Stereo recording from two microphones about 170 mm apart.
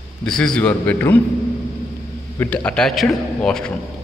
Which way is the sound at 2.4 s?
10° left (ahead or behind).